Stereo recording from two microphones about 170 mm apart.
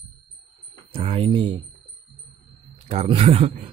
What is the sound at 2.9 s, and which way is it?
Speech, 35° right (ahead or behind).